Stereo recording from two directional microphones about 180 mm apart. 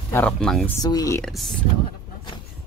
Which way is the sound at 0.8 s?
20° left (ahead or behind).